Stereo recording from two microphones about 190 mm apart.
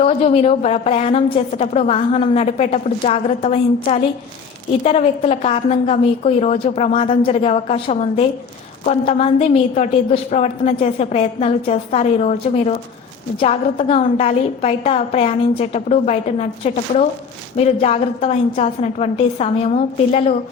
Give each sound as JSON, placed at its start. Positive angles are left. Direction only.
{"t": 0.0, "sound": "a woman's voice", "side_deg": 35}